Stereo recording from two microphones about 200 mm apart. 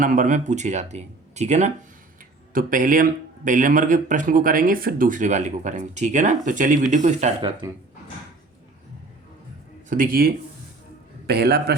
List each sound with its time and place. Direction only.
0.0 s speech: 40° right (ahead or behind)
9.9 s a man's voice: 45° right (ahead or behind)